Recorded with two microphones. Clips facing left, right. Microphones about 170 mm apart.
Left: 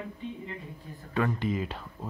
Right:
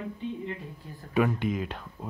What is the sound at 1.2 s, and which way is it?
Speech, 5° right (ahead or behind).